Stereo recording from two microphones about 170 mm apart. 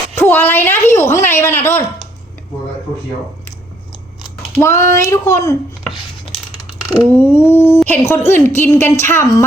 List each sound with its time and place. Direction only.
0.2 s a sound: 10° left (ahead or behind)
4.6 s a woman's voice: 15° left (ahead or behind)
7.1 s a woman's voice: 10° left (ahead or behind)